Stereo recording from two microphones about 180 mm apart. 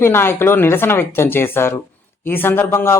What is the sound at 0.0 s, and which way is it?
Speech, 15° left (ahead or behind).